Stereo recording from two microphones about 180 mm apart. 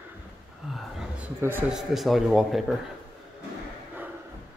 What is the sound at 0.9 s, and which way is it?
A man's voice, 10° right (ahead or behind).